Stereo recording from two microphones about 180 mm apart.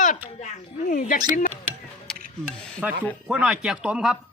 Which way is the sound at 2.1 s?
5° left (ahead or behind).